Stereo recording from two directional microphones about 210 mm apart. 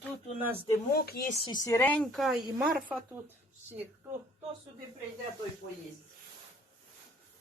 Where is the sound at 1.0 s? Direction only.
45° left (ahead or behind).